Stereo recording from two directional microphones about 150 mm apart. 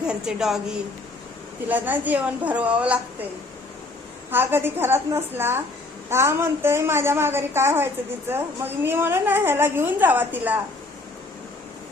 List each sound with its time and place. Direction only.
0.1 s a woman's voice: 5° right (ahead or behind)
4.3 s a woman's voice: 15° right (ahead or behind)